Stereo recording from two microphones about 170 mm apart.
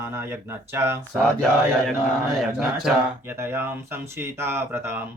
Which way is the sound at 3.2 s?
15° right (ahead or behind).